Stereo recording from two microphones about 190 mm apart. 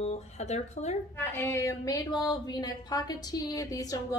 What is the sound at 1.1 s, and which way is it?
A woman's voice, 10° left (ahead or behind).